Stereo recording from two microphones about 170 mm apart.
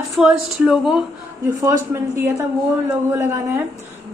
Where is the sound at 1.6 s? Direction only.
15° right (ahead or behind).